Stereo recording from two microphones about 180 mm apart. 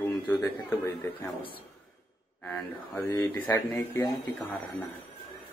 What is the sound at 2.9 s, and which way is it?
A man's voice, 15° left (ahead or behind).